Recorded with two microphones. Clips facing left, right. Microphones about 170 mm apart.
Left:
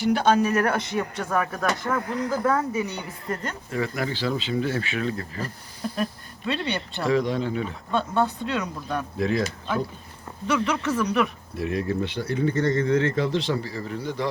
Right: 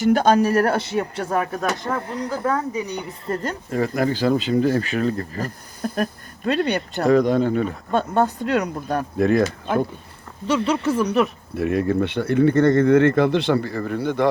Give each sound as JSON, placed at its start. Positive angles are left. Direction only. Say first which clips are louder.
{"t": 0.0, "sound": "speech", "louder": "right 4 dB", "side_deg": -45}
{"t": 2.5, "sound": "speech", "louder": "right 1 dB", "side_deg": -15}
{"t": 3.2, "sound": "speech", "louder": "right 5 dB", "side_deg": -40}
{"t": 10.4, "sound": "speech", "louder": "right 4 dB", "side_deg": -30}
{"t": 11.5, "sound": "speech", "louder": "right 6 dB", "side_deg": -60}